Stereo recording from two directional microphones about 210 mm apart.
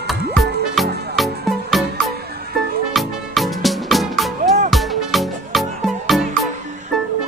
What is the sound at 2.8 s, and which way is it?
Music, centre (ahead or behind).